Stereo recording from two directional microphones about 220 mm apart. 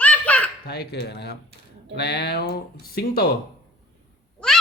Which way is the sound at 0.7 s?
50° left (ahead or behind).